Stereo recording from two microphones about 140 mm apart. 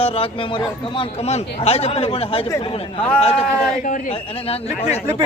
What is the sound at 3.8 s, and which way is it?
Speech, 70° left (ahead or behind).